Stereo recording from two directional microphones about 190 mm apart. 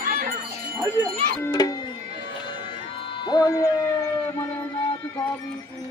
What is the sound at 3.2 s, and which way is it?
Music, 20° left (ahead or behind).